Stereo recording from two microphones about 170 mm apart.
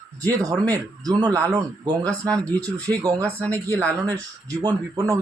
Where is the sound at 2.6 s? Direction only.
10° left (ahead or behind).